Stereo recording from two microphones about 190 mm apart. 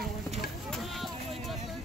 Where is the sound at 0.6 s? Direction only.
Centre (ahead or behind).